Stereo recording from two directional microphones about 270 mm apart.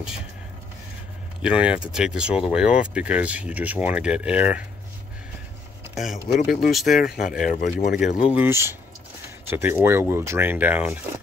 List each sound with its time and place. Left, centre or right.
1.4 s speech: centre
6.2 s speech: left
6.7 s speech: centre
7.4 s speech: left
8.2 s speech: centre